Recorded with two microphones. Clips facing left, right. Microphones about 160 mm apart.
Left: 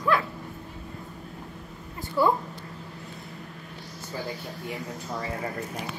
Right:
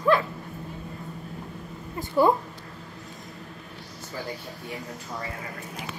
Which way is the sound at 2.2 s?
20° right (ahead or behind).